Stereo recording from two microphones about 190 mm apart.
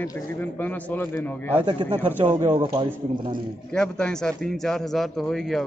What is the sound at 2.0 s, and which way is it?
Speech, 30° right (ahead or behind).